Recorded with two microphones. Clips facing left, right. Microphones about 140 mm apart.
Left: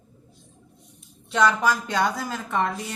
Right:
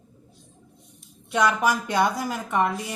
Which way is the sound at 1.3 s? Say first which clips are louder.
Left 1 dB; 15° right (ahead or behind).